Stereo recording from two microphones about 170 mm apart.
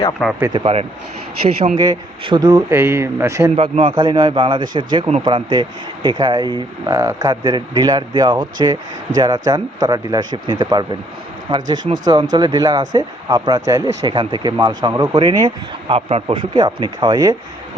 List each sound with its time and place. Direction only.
0.2 s speech: 5° left (ahead or behind)
0.5 s a man's voice: 35° right (ahead or behind)
1.8 s a man's voice: 25° right (ahead or behind)
3.5 s a man's voice: 35° right (ahead or behind)
3.9 s speech: 25° right (ahead or behind)